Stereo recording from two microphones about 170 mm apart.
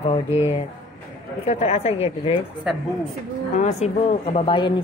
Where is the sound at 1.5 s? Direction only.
40° left (ahead or behind).